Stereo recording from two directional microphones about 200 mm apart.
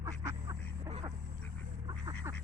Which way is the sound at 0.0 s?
15° right (ahead or behind).